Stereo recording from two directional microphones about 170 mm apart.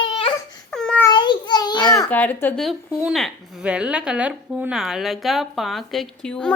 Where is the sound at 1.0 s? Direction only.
25° left (ahead or behind).